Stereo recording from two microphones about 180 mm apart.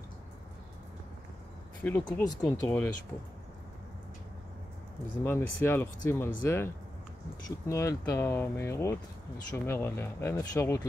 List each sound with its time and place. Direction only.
1.8 s speech: 10° left (ahead or behind)
5.2 s speech: 10° left (ahead or behind)